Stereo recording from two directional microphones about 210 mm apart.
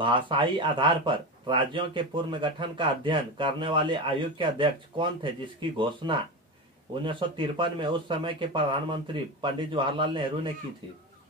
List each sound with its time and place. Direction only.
0.0 s speech: 25° right (ahead or behind)